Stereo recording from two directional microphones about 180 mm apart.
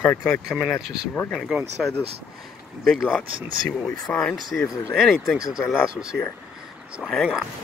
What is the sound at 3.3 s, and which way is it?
Speech, 30° right (ahead or behind).